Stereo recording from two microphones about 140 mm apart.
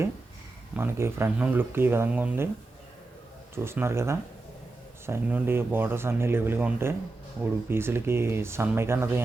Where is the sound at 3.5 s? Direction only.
15° right (ahead or behind).